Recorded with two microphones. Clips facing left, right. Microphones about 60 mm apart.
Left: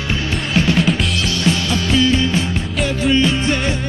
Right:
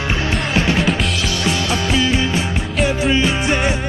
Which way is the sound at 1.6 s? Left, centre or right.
Right.